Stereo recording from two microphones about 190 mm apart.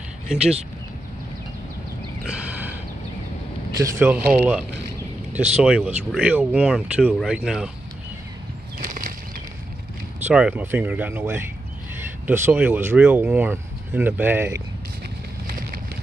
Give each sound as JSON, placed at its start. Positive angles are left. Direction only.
{"t": 3.7, "sound": "speech", "side_deg": -15}
{"t": 8.7, "sound": "bird flight", "side_deg": -45}
{"t": 10.2, "sound": "speech", "side_deg": -5}